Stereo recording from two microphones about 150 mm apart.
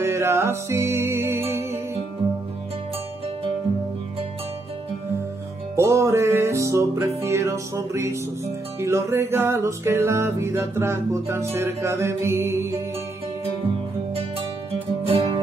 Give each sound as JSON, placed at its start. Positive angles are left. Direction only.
{"t": 0.0, "sound": "music", "side_deg": -15}
{"t": 5.8, "sound": "music", "side_deg": -20}
{"t": 14.7, "sound": "music", "side_deg": -40}